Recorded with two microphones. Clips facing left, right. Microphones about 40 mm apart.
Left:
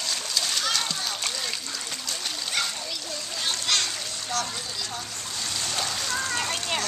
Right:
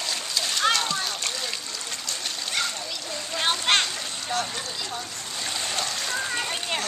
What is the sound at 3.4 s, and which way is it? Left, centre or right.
Splash, right.